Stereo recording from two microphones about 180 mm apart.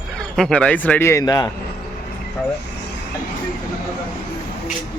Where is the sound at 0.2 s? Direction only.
5° left (ahead or behind); by 1.5 s 20° left (ahead or behind).